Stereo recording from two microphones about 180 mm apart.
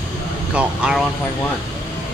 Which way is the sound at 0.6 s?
5° right (ahead or behind).